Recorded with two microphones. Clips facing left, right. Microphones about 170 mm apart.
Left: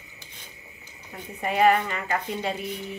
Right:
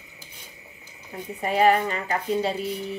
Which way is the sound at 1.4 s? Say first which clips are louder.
Right 1 dB; 35° right (ahead or behind).